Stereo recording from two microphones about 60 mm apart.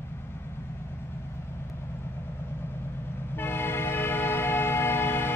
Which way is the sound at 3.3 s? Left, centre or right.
Left.